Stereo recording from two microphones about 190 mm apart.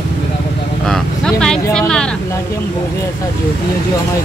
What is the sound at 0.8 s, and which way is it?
Speech, 5° left (ahead or behind).